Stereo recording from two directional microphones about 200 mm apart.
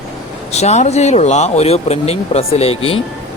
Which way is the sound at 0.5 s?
35° left (ahead or behind).